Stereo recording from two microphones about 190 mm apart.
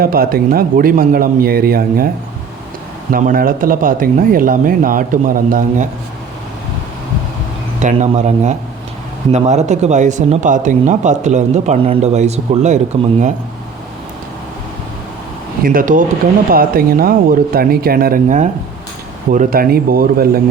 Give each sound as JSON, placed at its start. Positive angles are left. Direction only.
{"t": 0.0, "sound": "speech", "side_deg": -50}
{"t": 3.1, "sound": "speech", "side_deg": -45}
{"t": 7.8, "sound": "speech", "side_deg": -40}
{"t": 15.6, "sound": "speech", "side_deg": -50}